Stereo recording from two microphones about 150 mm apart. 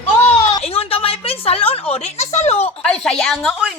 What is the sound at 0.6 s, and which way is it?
A woman's voice, 40° left (ahead or behind).